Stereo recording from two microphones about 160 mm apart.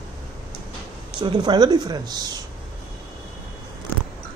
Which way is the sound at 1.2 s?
30° right (ahead or behind).